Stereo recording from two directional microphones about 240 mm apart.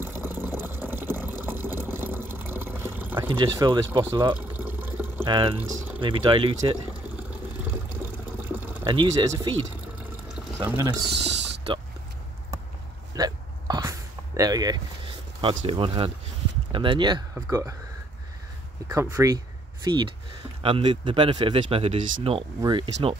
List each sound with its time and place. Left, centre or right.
0.0 s water: centre
3.3 s speech: centre
4.4 s water: centre
5.2 s speech: right
8.5 s a sound: centre
8.8 s speech: centre
10.6 s speech: centre
13.1 s hiccup: centre
16.7 s speech: right
18.9 s speech: centre